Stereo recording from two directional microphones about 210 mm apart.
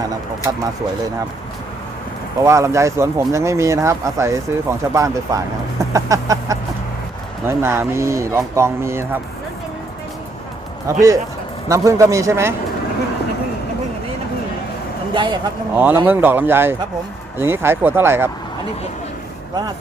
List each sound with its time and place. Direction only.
2.4 s speech: 15° right (ahead or behind)
10.8 s speech: 15° right (ahead or behind)
15.1 s speech: 20° right (ahead or behind)
15.7 s speech: 10° right (ahead or behind)